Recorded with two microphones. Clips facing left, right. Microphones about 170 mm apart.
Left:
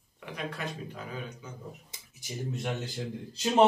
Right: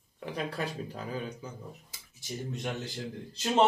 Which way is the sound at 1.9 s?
15° left (ahead or behind).